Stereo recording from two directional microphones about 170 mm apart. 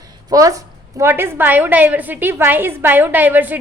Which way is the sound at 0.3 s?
20° right (ahead or behind).